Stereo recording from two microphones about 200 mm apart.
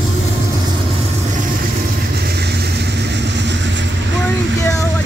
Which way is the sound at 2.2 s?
55° right (ahead or behind).